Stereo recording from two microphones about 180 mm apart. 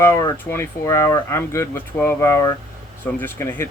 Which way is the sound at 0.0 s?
15° left (ahead or behind).